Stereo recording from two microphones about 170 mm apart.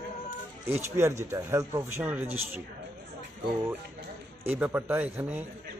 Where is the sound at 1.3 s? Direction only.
15° right (ahead or behind).